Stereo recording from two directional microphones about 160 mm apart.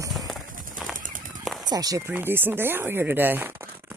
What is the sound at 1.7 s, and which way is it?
Speech, 25° right (ahead or behind).